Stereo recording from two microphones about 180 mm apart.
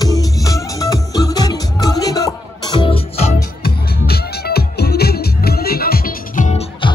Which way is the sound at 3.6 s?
60° left (ahead or behind).